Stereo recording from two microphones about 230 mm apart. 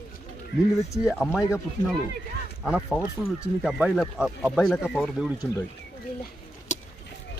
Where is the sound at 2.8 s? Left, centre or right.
Centre.